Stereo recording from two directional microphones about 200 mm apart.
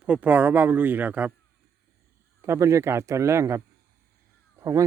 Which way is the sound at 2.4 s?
15° right (ahead or behind).